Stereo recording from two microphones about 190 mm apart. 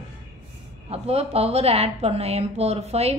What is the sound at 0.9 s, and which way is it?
A woman's voice, 30° right (ahead or behind).